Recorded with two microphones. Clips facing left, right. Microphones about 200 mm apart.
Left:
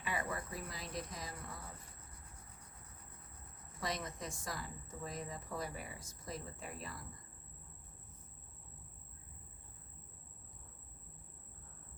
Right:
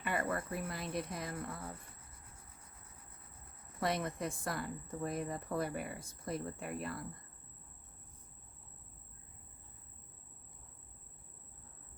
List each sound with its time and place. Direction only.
0.0 s speech: 55° right (ahead or behind)
3.8 s speech: 60° right (ahead or behind)